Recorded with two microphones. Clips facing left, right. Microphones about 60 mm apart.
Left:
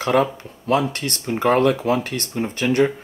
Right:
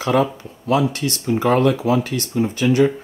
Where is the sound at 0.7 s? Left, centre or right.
Left.